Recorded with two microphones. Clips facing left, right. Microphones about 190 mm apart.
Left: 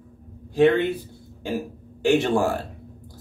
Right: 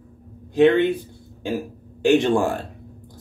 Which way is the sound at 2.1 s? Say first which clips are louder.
Right 2 dB; 5° left (ahead or behind).